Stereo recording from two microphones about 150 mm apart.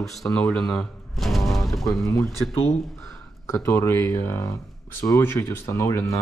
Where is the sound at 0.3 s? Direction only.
10° left (ahead or behind).